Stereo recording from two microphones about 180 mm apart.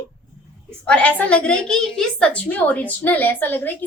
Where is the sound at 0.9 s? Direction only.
5° left (ahead or behind).